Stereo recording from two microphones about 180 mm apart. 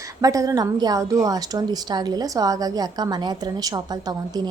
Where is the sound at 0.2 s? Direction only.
20° right (ahead or behind).